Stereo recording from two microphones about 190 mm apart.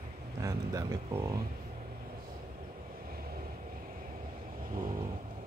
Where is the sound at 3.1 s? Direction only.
50° right (ahead or behind).